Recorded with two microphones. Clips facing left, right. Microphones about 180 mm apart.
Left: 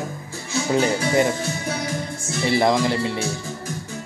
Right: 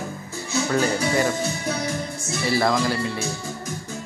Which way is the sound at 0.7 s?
20° left (ahead or behind).